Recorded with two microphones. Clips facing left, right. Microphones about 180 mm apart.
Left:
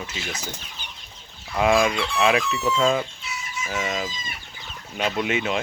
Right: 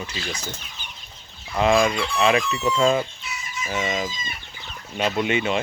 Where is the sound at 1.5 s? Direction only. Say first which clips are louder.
Right 1 dB; 5° left (ahead or behind).